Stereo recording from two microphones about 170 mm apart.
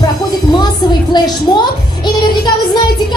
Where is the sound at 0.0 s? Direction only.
25° left (ahead or behind).